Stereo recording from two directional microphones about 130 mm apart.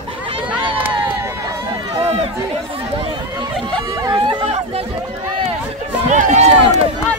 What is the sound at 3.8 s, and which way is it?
Hubbub, 40° right (ahead or behind).